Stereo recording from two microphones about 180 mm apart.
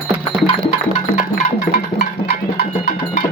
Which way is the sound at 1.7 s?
60° left (ahead or behind).